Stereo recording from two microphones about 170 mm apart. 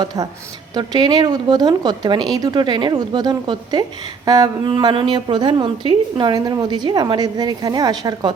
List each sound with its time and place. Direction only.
0.7 s a woman's voice: 25° right (ahead or behind)